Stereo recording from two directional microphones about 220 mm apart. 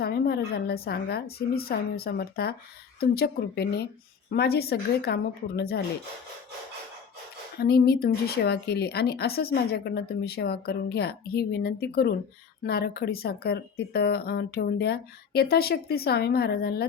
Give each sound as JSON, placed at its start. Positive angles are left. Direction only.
{"t": 0.0, "sound": "speech", "side_deg": 45}
{"t": 7.6, "sound": "speech", "side_deg": 45}